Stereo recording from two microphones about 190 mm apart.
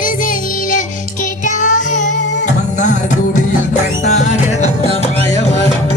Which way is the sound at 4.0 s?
35° left (ahead or behind).